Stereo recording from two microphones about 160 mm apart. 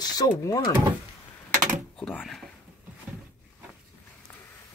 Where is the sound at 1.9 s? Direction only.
10° left (ahead or behind).